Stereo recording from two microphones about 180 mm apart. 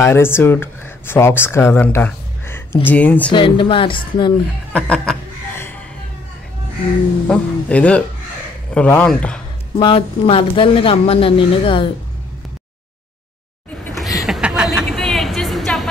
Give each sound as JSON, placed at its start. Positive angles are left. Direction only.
{"t": 0.0, "sound": "speech", "side_deg": 15}
{"t": 3.3, "sound": "speech", "side_deg": 25}
{"t": 4.7, "sound": "speech", "side_deg": 5}
{"t": 7.2, "sound": "speech", "side_deg": 5}
{"t": 9.8, "sound": "speech", "side_deg": 30}
{"t": 13.8, "sound": "a sound", "side_deg": 0}
{"t": 14.2, "sound": "chuckle", "side_deg": 0}
{"t": 15.0, "sound": "music", "side_deg": 0}